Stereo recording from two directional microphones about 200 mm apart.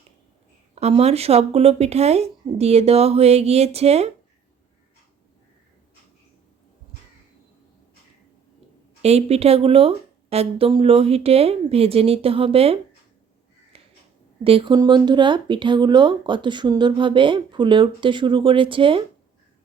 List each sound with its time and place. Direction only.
0.8 s speech: 30° right (ahead or behind)
9.0 s speech: 30° right (ahead or behind)
14.4 s speech: 25° right (ahead or behind)